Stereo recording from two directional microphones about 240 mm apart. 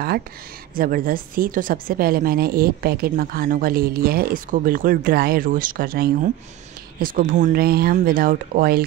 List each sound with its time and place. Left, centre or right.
0.7 s a woman's voice: right